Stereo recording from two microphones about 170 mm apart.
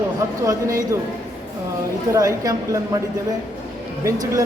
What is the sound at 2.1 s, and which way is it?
Speech, 20° right (ahead or behind).